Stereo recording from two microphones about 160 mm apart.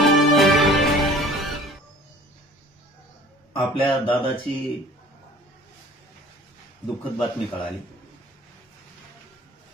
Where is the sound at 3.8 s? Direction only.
35° left (ahead or behind).